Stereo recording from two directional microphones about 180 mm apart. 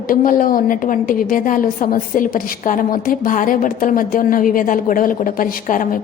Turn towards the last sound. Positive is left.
turn(degrees=50)  # may be behind; listen again after turning